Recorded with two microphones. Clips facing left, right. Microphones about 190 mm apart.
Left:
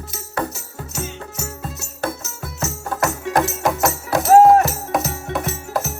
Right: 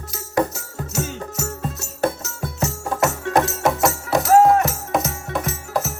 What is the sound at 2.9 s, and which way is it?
Music, 5° right (ahead or behind).